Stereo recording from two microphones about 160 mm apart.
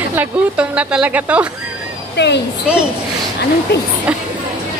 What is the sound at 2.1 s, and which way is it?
Speech, 90° left.